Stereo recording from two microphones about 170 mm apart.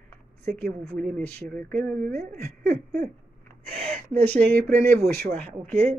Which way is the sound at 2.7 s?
60° right (ahead or behind).